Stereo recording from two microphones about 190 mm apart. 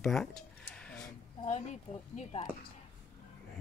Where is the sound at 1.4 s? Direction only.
40° left (ahead or behind).